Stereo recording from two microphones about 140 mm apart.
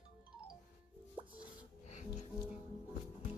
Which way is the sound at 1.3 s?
60° left (ahead or behind).